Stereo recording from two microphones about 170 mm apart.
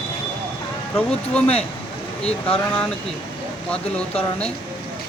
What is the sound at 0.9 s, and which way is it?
Speech, 5° left (ahead or behind).